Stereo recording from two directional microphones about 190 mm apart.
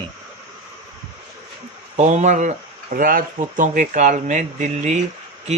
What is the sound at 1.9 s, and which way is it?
Speech, 40° right (ahead or behind).